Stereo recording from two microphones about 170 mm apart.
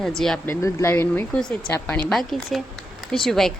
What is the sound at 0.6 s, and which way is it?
Speech, 15° left (ahead or behind).